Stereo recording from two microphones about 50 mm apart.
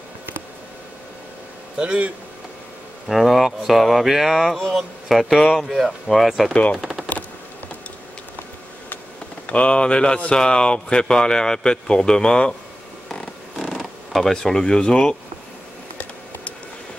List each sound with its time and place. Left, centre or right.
1.8 s speech: right
3.1 s speech: centre
6.8 s typing: centre
9.5 s speech: left
13.6 s creak: centre
14.3 s speech: centre